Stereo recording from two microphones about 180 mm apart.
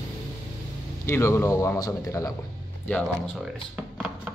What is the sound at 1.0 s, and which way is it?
Speech, 15° left (ahead or behind).